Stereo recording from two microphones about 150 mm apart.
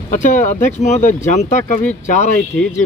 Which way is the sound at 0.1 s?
55° left (ahead or behind).